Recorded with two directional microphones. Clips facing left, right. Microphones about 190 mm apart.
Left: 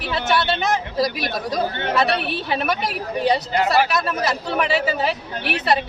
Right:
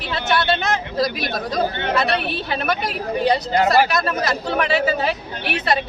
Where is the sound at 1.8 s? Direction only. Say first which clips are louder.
Even; 35° left (ahead or behind).